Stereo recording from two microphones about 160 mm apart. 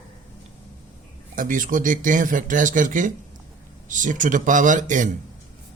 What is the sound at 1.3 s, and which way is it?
Speech, 55° right (ahead or behind).